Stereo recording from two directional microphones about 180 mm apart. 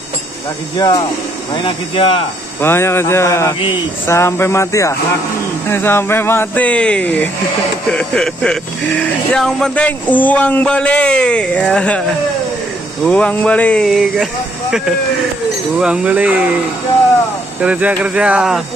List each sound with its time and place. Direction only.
0.7 s speech: 25° left (ahead or behind)
2.6 s a man's voice: 15° left (ahead or behind)
13.0 s speech: 5° left (ahead or behind)
17.6 s speech: 5° right (ahead or behind)